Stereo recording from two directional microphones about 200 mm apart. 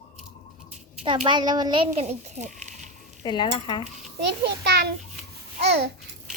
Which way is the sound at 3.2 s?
20° left (ahead or behind).